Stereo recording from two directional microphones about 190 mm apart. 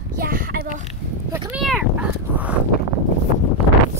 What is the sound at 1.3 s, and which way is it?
Speech, 5° right (ahead or behind).